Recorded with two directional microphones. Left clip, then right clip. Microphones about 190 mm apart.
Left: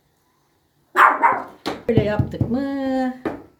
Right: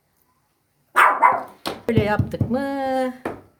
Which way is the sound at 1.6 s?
40° right (ahead or behind).